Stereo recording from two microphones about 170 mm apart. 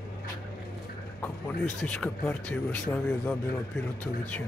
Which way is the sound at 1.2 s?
10° left (ahead or behind).